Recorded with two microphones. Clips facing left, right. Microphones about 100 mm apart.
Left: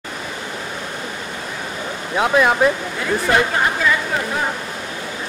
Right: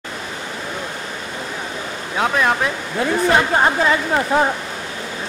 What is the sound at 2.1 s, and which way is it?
Speech, 5° left (ahead or behind).